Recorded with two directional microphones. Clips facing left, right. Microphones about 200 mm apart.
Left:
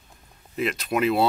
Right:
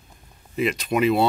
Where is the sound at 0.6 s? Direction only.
Centre (ahead or behind).